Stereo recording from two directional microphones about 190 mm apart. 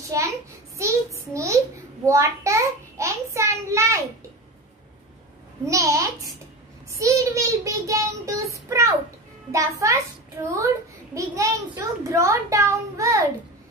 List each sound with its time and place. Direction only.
0.7 s a sound: 15° right (ahead or behind)
2.0 s child singing: 15° right (ahead or behind)
5.7 s a child's voice: 15° right (ahead or behind)